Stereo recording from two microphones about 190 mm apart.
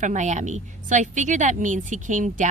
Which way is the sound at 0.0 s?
40° right (ahead or behind).